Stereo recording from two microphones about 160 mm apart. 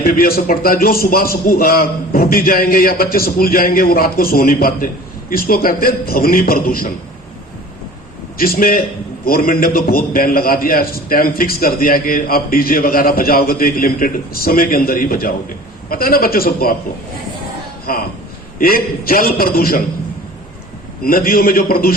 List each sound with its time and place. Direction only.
0.0 s a man's voice: 70° left (ahead or behind)
8.4 s a man's voice: 65° left (ahead or behind)
17.9 s a man's voice: 65° left (ahead or behind)
21.0 s a man's voice: 65° left (ahead or behind)